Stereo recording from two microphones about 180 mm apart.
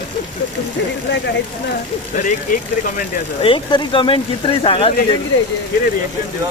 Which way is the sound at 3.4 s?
25° left (ahead or behind).